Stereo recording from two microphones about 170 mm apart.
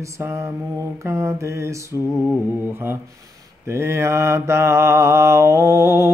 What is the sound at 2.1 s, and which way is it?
Mantra, centre (ahead or behind).